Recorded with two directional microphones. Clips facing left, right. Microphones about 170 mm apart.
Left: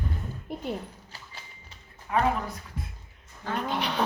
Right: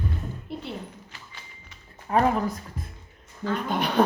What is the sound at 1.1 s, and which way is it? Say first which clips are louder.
Clip-clop: even; 35° left (ahead or behind).